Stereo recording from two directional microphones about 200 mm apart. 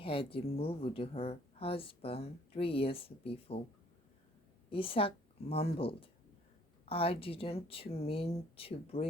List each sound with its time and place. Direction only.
0.0 s speech: 25° left (ahead or behind)
4.7 s speech: 25° left (ahead or behind)